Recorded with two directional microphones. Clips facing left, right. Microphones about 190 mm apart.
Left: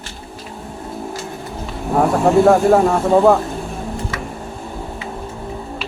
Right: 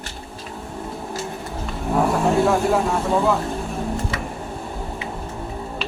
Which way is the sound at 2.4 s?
50° left (ahead or behind).